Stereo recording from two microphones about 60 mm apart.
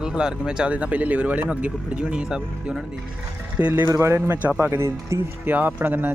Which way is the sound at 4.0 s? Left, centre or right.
Right.